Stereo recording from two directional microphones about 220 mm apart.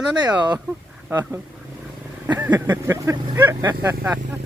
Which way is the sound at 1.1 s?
10° right (ahead or behind).